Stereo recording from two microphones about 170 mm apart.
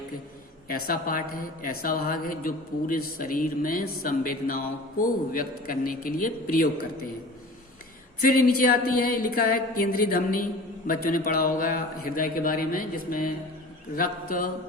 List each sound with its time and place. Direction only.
0.7 s a woman's voice: 55° left (ahead or behind)
8.4 s a woman's voice: 60° left (ahead or behind)